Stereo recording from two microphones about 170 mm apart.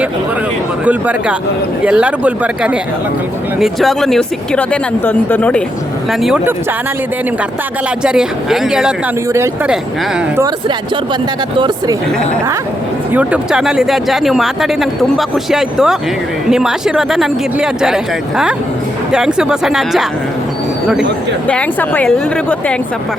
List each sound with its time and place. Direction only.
0.9 s speech: 10° right (ahead or behind); by 5.6 s 10° left (ahead or behind)
6.1 s speech: 5° right (ahead or behind)
8.0 s speech: 5° right (ahead or behind)
13.1 s speech: 5° right (ahead or behind)
21.4 s speech: 10° left (ahead or behind)